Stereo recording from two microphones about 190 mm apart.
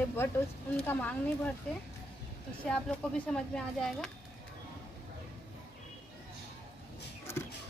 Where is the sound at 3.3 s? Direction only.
5° left (ahead or behind).